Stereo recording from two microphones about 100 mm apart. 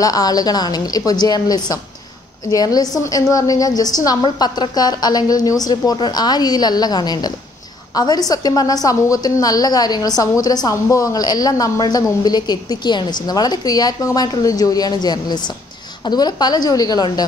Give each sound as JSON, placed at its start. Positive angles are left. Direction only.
{"t": 0.0, "sound": "a woman's voice", "side_deg": 40}